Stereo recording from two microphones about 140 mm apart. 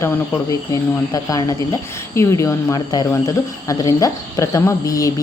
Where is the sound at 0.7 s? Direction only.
25° left (ahead or behind).